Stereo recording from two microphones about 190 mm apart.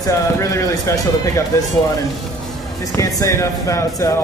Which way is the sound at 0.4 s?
15° left (ahead or behind).